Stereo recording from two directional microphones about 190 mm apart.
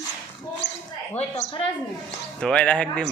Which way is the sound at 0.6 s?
65° left (ahead or behind).